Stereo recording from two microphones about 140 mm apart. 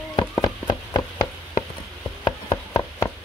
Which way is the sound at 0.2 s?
30° left (ahead or behind).